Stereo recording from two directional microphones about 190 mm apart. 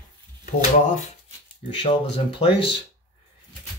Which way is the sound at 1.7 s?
30° left (ahead or behind).